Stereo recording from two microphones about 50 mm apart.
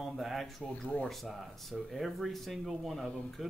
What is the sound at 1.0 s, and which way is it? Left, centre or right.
Speech, centre.